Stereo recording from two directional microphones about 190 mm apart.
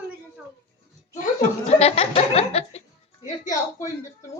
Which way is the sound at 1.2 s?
40° left (ahead or behind).